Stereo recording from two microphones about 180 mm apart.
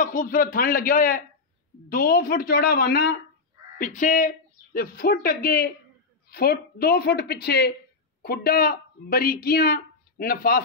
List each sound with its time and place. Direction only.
0.0 s a man's voice: 50° left (ahead or behind)